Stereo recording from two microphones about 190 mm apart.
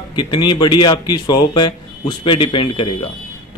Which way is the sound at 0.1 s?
25° left (ahead or behind).